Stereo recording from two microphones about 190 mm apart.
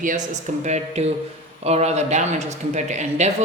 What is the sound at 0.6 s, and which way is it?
A man's voice, 35° right (ahead or behind).